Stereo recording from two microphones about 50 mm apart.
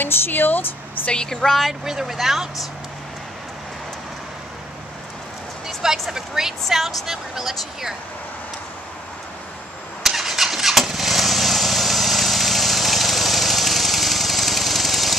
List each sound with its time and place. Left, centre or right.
0.0 s speech: left
1.1 s a woman's voice: centre
5.8 s a woman's voice: centre
10.0 s vehicle: centre